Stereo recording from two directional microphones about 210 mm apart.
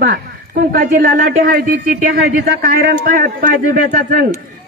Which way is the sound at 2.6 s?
40° right (ahead or behind).